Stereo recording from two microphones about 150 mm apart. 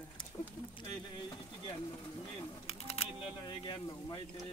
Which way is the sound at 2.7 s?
40° left (ahead or behind).